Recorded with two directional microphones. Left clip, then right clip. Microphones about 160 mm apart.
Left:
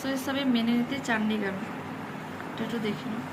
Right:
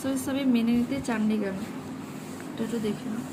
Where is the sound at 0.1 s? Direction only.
30° right (ahead or behind).